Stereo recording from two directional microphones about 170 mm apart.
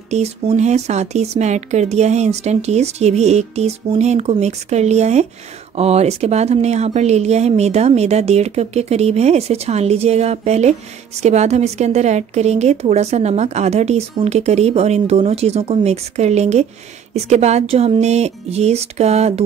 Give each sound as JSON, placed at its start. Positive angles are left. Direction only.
{"t": 0.1, "sound": "speech", "side_deg": -40}